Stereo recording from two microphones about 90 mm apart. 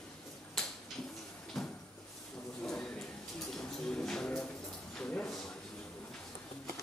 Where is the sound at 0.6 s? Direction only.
5° left (ahead or behind).